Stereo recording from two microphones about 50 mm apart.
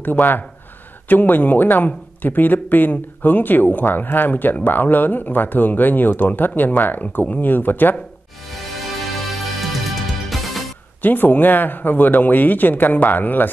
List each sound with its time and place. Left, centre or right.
0.0 s speech: left
9.3 s music: centre
11.0 s speech: left